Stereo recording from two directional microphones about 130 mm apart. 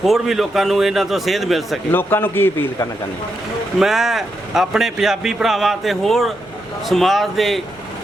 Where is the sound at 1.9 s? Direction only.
15° left (ahead or behind).